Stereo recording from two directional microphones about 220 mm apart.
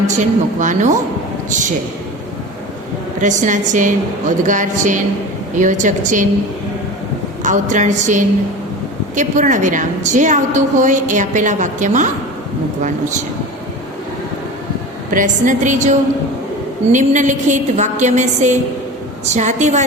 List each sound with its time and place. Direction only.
0.2 s a woman's voice: 35° right (ahead or behind)
3.2 s a woman's voice: 35° right (ahead or behind)
7.4 s a woman's voice: 35° right (ahead or behind)
15.1 s a woman's voice: 35° right (ahead or behind)